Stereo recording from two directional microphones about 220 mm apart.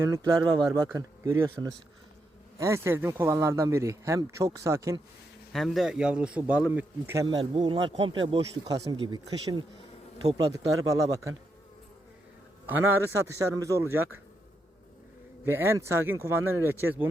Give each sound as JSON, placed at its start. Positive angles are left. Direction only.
{"t": 0.0, "sound": "speech", "side_deg": -15}
{"t": 5.5, "sound": "speech", "side_deg": 0}
{"t": 12.9, "sound": "speech", "side_deg": -10}
{"t": 15.4, "sound": "speech", "side_deg": -10}